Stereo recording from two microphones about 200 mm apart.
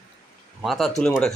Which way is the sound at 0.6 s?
Centre (ahead or behind).